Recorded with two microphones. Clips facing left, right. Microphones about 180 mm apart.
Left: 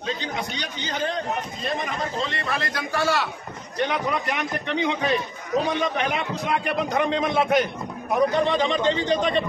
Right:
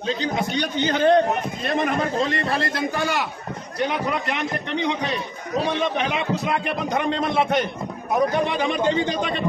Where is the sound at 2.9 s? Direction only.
15° right (ahead or behind).